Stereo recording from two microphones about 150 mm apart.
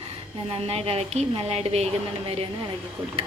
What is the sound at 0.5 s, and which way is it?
A woman's voice, 40° right (ahead or behind).